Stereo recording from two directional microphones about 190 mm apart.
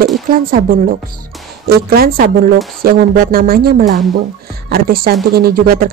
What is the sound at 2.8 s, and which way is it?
Speech, 50° right (ahead or behind).